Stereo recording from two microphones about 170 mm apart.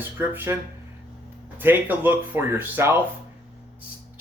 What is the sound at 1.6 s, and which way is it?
Speech, 10° right (ahead or behind).